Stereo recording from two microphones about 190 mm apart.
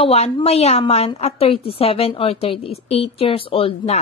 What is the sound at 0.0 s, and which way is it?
A woman's voice, 30° left (ahead or behind).